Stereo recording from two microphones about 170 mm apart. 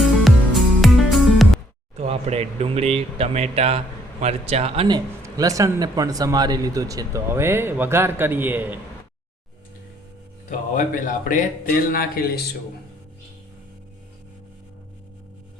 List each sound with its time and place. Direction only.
0.0 s music: centre (ahead or behind)
2.0 s speech: 40° right (ahead or behind); by 8.8 s 10° right (ahead or behind)
10.8 s speech: 50° left (ahead or behind)